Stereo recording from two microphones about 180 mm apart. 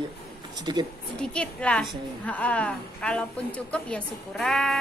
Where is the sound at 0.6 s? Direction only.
25° right (ahead or behind).